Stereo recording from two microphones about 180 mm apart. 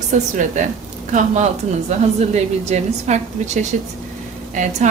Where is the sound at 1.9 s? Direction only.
40° right (ahead or behind).